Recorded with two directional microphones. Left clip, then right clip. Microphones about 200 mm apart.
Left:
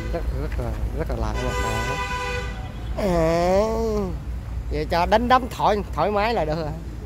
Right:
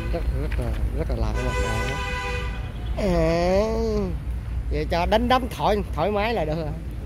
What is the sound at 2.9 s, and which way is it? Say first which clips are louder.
Speech: left 2 dB; centre (ahead or behind).